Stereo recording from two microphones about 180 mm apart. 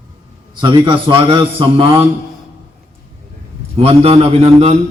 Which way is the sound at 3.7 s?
35° right (ahead or behind).